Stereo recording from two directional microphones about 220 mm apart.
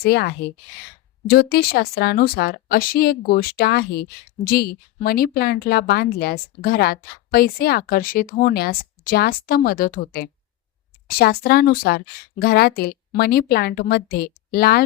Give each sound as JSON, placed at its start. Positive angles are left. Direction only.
{"t": 0.0, "sound": "speech", "side_deg": 50}